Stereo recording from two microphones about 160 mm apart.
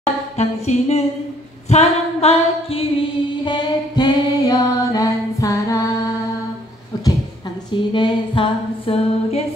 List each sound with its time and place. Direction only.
0.0 s a sound: 45° left (ahead or behind)
1.7 s singing: 40° left (ahead or behind); by 5.8 s 20° left (ahead or behind)
7.7 s female singing: 30° left (ahead or behind)